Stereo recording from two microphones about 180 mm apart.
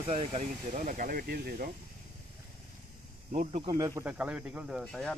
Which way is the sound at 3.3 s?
40° right (ahead or behind).